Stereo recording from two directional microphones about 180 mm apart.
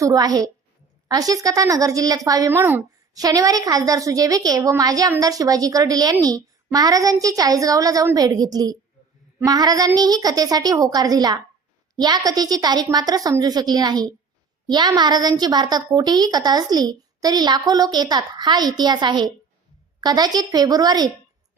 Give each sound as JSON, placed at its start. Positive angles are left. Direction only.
{"t": 0.0, "sound": "a woman's voice", "side_deg": -20}